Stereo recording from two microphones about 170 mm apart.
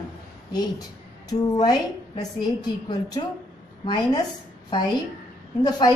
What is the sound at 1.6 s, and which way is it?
A woman's voice, 25° left (ahead or behind).